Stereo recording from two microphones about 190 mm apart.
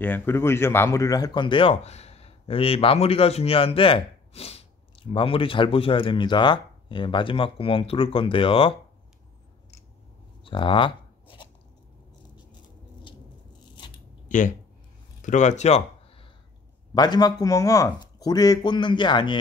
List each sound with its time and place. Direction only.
0.0 s speech: 10° left (ahead or behind); by 8.7 s 30° left (ahead or behind)
10.4 s writing: 25° left (ahead or behind)
13.7 s a sound: 25° left (ahead or behind)
14.3 s speech: 40° left (ahead or behind)
16.9 s speech: 20° left (ahead or behind)